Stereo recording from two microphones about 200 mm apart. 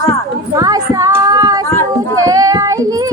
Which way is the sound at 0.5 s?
15° right (ahead or behind).